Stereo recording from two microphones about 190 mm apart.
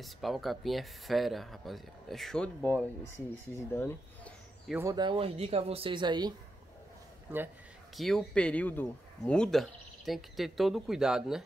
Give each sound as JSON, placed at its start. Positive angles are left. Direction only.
{"t": 0.0, "sound": "speech", "side_deg": 0}
{"t": 4.8, "sound": "speech", "side_deg": -25}
{"t": 7.3, "sound": "speech", "side_deg": -10}
{"t": 7.9, "sound": "speech", "side_deg": 0}